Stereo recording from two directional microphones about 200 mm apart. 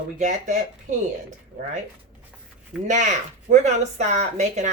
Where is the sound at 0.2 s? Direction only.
35° right (ahead or behind).